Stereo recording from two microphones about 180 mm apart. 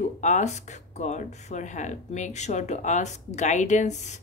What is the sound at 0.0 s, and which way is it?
Speech, 40° left (ahead or behind).